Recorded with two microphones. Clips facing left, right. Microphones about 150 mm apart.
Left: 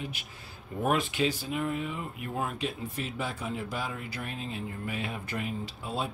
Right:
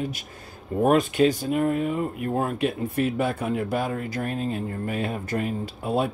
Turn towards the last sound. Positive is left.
turn(degrees=-55)  # may be behind; listen again after turning